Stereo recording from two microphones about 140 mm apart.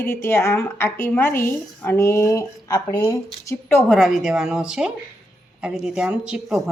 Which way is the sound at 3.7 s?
5° left (ahead or behind).